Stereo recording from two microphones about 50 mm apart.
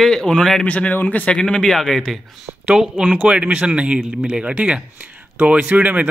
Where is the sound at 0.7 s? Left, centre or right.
Left.